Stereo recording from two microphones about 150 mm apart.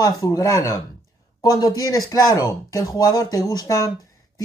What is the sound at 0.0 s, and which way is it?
Speech, 25° left (ahead or behind).